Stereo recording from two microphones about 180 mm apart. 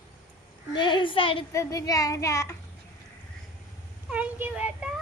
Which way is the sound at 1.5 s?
15° left (ahead or behind).